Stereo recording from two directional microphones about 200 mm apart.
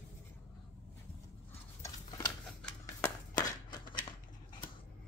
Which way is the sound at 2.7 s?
10° left (ahead or behind).